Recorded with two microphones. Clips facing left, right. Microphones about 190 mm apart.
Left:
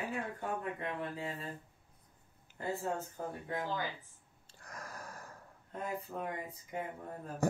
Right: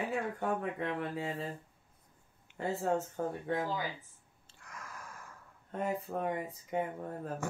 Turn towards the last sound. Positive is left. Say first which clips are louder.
# left 6 dB
turn(degrees=40)  # may be behind; listen again after turning